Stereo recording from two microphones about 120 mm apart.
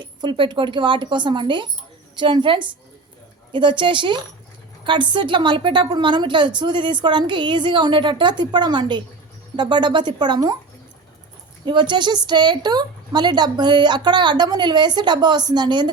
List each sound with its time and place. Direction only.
0.0 s a woman's voice: 40° right (ahead or behind)
11.6 s a woman's voice: 40° right (ahead or behind)